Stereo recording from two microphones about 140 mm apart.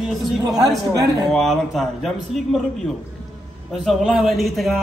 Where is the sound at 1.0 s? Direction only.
25° right (ahead or behind).